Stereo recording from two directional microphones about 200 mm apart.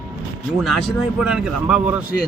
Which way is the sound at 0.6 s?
Centre (ahead or behind).